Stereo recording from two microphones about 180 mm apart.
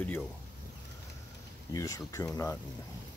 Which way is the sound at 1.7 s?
20° left (ahead or behind).